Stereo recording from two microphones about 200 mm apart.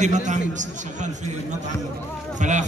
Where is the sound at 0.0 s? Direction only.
35° right (ahead or behind).